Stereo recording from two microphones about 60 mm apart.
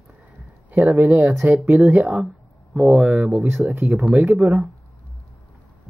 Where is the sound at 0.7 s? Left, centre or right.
Right.